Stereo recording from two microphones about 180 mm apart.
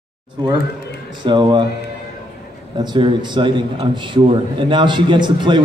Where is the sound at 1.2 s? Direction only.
25° right (ahead or behind).